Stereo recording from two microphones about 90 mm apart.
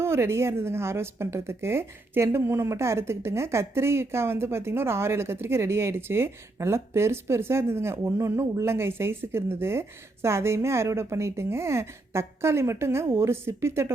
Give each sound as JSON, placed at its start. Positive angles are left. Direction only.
{"t": 0.0, "sound": "a woman's voice", "side_deg": -30}